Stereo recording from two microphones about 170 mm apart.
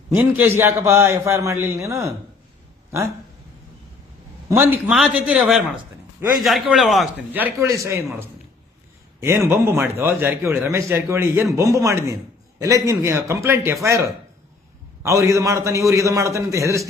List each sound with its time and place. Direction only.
0.1 s a man's voice: 10° right (ahead or behind)
4.4 s a man's voice: 15° right (ahead or behind)
7.3 s a man's voice: 15° right (ahead or behind)